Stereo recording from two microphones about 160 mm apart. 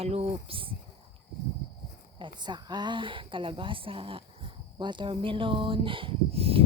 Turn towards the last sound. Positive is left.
turn(degrees=-40)  # may be behind; listen again after turning